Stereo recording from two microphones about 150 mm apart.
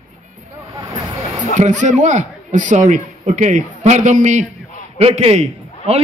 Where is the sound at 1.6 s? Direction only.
55° right (ahead or behind).